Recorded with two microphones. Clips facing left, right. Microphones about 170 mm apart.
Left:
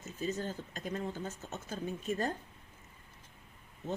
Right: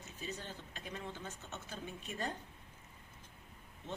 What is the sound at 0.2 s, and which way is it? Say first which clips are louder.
Speech: left 9 dB; 45° left (ahead or behind).